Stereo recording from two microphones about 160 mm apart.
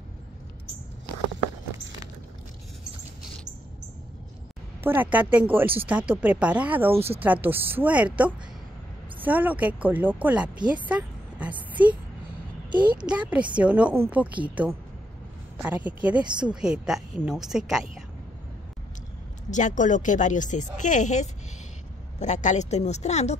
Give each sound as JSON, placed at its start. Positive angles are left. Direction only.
{"t": 4.8, "sound": "speech", "side_deg": -10}
{"t": 10.7, "sound": "a sound", "side_deg": -10}
{"t": 12.7, "sound": "a woman's voice", "side_deg": -30}
{"t": 13.6, "sound": "a woman's voice", "side_deg": -10}
{"t": 19.5, "sound": "a woman's voice", "side_deg": 50}